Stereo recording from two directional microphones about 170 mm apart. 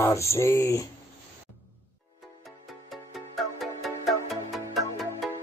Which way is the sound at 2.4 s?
Centre (ahead or behind).